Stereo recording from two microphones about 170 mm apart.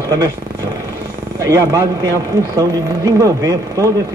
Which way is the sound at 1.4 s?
15° right (ahead or behind).